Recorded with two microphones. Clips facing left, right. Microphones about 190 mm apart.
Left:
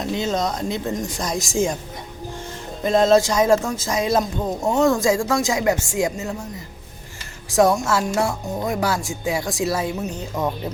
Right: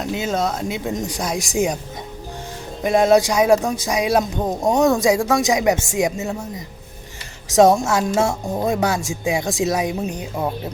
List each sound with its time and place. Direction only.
0.0 s speech: 5° right (ahead or behind)
2.8 s speech: 10° right (ahead or behind)
7.5 s speech: 20° right (ahead or behind)